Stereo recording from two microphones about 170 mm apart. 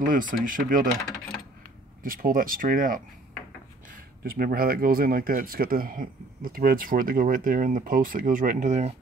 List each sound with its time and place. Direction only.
0.0 s speech: 55° right (ahead or behind)
2.0 s speech: 55° right (ahead or behind)